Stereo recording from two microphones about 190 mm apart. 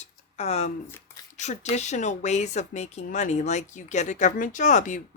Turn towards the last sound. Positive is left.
turn(degrees=40)  # may be behind; listen again after turning